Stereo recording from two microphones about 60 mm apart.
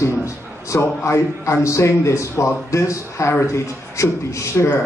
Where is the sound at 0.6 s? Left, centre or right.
Left.